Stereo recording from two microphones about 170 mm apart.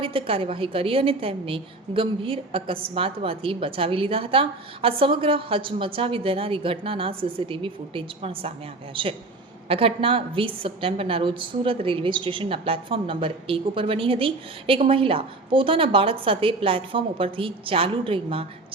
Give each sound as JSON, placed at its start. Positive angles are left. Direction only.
{"t": 0.0, "sound": "a woman's voice", "side_deg": -30}